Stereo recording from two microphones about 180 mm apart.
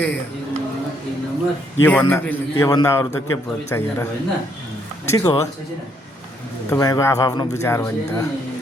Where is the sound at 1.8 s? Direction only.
10° left (ahead or behind).